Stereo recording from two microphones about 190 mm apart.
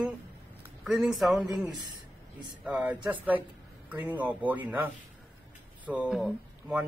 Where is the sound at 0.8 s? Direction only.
Centre (ahead or behind).